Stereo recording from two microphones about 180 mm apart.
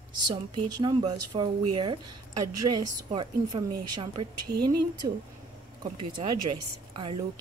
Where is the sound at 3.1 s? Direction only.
30° right (ahead or behind).